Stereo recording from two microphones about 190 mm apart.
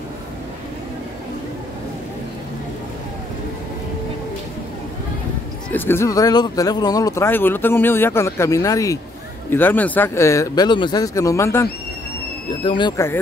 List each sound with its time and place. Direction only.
5.7 s speech: 10° left (ahead or behind)
12.6 s speech: 25° left (ahead or behind)